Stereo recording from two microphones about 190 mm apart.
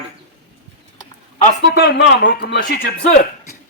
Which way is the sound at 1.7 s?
60° left (ahead or behind).